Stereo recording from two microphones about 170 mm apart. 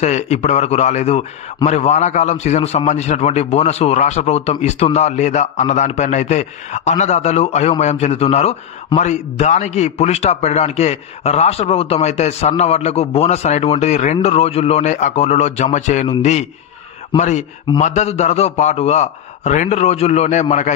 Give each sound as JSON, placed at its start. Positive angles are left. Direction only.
{"t": 0.0, "sound": "a man's voice", "side_deg": 40}